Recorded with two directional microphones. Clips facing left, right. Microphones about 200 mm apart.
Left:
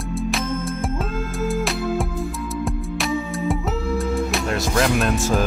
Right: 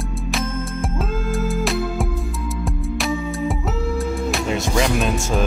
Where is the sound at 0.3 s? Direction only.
Centre (ahead or behind).